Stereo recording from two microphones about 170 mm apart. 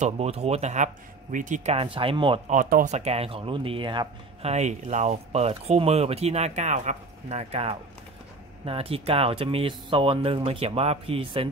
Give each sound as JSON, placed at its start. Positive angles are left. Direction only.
{"t": 0.0, "sound": "speech", "side_deg": -40}
{"t": 2.4, "sound": "speech", "side_deg": -50}